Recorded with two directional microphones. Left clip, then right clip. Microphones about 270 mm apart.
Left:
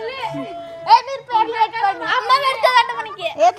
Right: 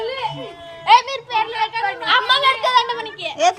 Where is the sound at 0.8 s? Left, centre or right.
Left.